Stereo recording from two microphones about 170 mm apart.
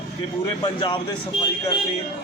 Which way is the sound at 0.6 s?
25° left (ahead or behind).